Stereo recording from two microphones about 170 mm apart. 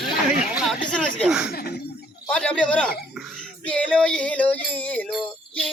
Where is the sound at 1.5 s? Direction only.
65° left (ahead or behind).